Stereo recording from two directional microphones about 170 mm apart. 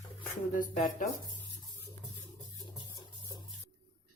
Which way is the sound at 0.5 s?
50° left (ahead or behind).